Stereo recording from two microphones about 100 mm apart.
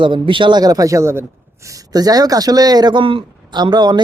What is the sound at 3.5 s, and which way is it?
Speech, 45° right (ahead or behind).